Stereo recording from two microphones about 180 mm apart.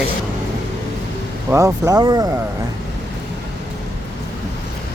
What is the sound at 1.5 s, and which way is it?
Speech, 15° right (ahead or behind).